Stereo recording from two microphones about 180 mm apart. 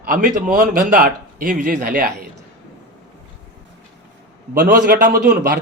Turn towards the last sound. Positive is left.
turn(degrees=-50)  # may be behind; listen again after turning